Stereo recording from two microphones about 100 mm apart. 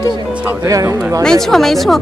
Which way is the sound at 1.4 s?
5° left (ahead or behind).